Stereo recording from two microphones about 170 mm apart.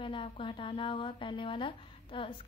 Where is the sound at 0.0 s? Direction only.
30° left (ahead or behind).